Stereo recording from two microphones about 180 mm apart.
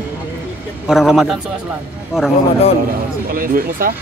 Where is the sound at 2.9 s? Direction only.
55° right (ahead or behind).